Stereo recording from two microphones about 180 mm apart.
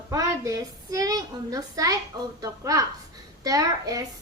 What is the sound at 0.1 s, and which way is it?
A woman's voice, 20° right (ahead or behind).